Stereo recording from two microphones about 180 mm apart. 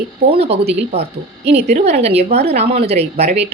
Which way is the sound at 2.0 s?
35° right (ahead or behind).